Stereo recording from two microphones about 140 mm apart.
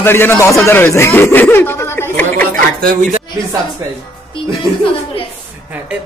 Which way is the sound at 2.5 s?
90° right.